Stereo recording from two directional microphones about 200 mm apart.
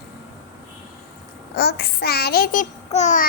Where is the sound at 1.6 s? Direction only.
55° left (ahead or behind); by 3.3 s 40° left (ahead or behind).